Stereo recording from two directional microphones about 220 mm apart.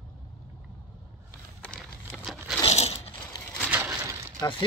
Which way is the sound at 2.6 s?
25° left (ahead or behind).